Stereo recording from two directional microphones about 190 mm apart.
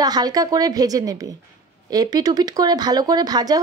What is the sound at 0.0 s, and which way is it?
A woman's voice, 20° right (ahead or behind).